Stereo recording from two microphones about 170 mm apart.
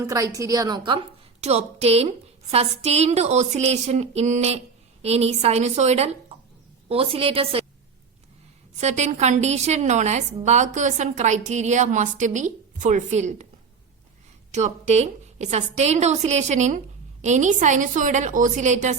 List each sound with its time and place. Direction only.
0.0 s a woman's voice: 20° right (ahead or behind)
8.8 s a woman's voice: 40° right (ahead or behind)
14.5 s a woman's voice: 40° right (ahead or behind)